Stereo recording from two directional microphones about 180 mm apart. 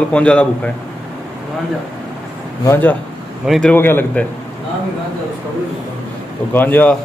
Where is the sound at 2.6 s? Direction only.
10° left (ahead or behind).